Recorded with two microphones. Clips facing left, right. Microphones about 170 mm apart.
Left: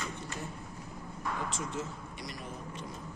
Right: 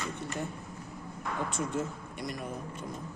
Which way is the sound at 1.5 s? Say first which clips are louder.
Right 4 dB; 55° right (ahead or behind).